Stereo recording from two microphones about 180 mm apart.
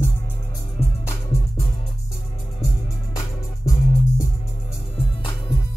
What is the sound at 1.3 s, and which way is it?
Music, 15° left (ahead or behind).